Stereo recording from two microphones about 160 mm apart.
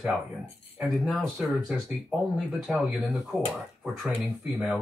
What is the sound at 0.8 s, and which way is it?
Speech, 5° right (ahead or behind).